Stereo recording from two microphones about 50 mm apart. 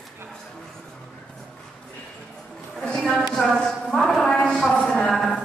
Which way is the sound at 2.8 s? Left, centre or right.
Centre.